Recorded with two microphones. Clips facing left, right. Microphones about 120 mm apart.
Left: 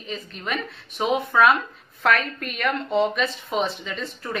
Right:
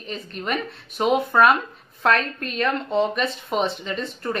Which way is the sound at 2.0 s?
30° right (ahead or behind).